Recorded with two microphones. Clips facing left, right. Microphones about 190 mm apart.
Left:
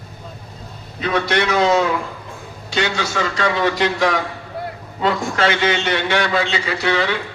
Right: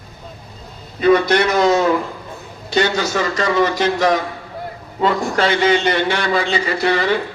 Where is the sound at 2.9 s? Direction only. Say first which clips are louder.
Right 3 dB; 40° right (ahead or behind).